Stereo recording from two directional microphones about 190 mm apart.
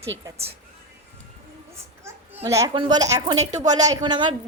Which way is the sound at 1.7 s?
15° right (ahead or behind).